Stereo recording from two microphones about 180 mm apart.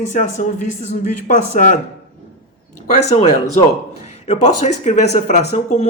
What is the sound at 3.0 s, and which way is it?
Speech, 40° left (ahead or behind).